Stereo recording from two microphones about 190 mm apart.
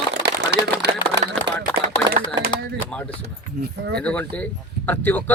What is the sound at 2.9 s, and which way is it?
Speech, 5° left (ahead or behind).